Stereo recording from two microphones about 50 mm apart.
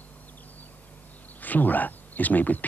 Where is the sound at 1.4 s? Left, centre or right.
Left.